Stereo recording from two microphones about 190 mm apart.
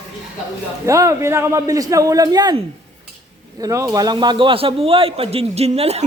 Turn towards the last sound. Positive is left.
turn(degrees=-35)  # may be behind; listen again after turning